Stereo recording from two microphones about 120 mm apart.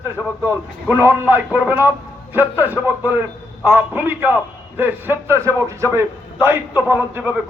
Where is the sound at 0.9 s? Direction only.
15° right (ahead or behind).